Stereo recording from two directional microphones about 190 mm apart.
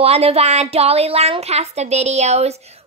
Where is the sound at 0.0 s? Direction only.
30° right (ahead or behind).